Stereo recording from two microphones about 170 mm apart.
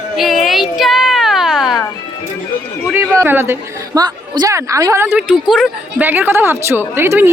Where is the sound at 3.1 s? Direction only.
15° right (ahead or behind).